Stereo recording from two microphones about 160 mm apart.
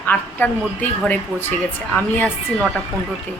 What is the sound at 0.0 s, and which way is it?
Speech, 10° left (ahead or behind).